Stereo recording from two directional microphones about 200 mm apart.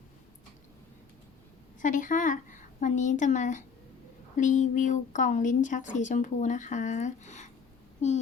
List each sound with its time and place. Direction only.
1.8 s a woman's voice: 40° left (ahead or behind)